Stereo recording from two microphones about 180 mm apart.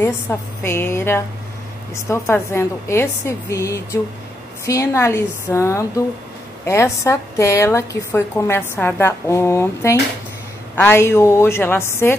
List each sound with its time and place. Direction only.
0.0 s a woman's voice: 15° left (ahead or behind)